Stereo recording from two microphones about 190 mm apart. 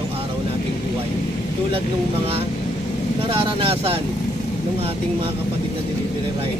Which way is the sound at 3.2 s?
30° right (ahead or behind).